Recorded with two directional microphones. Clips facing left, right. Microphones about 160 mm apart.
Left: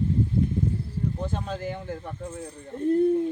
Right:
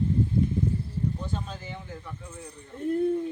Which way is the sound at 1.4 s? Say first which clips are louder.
Left 8 dB; 60° left (ahead or behind).